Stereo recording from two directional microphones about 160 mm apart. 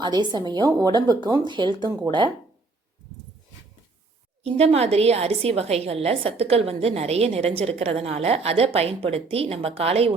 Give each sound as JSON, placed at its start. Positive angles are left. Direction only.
{"t": 0.0, "sound": "speech", "side_deg": -25}
{"t": 4.4, "sound": "a woman's voice", "side_deg": -40}